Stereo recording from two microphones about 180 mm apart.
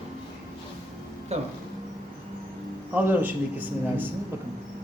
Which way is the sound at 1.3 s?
35° right (ahead or behind).